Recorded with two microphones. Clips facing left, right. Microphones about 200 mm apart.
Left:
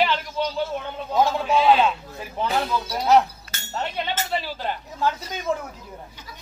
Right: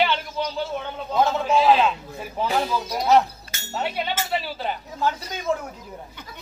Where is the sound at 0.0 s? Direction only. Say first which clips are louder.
Even; centre (ahead or behind).